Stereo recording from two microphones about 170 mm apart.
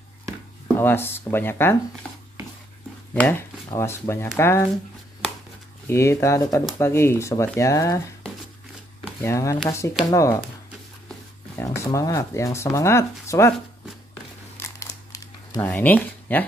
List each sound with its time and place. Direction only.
0.7 s speech: 15° left (ahead or behind)
3.2 s speech: 10° left (ahead or behind)
5.9 s speech: 15° left (ahead or behind)
9.2 s speech: 15° left (ahead or behind)
11.5 s speech: 15° left (ahead or behind)
14.6 s crumpling: 20° left (ahead or behind)
15.6 s speech: 10° left (ahead or behind)